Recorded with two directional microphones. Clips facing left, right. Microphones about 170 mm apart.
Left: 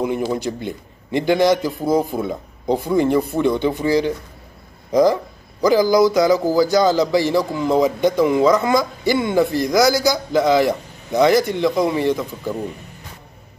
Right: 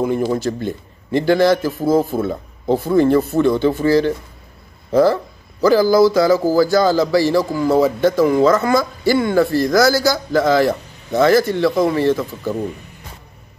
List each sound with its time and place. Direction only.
0.0 s a man's voice: 15° left (ahead or behind)